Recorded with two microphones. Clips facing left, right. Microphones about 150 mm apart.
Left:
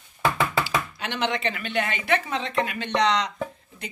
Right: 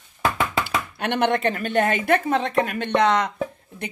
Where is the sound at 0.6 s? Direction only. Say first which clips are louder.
Right 2 dB; 55° right (ahead or behind).